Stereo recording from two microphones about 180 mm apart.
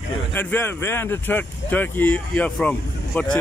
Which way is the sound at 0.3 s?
10° left (ahead or behind).